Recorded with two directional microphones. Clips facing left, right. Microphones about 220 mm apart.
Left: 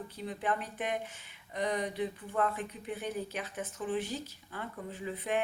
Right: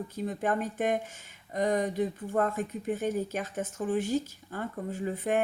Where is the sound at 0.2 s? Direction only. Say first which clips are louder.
Right 5 dB; 45° right (ahead or behind).